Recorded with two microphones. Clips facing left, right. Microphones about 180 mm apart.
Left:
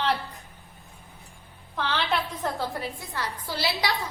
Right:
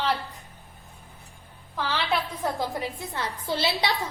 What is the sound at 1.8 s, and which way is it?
Speech, 5° right (ahead or behind).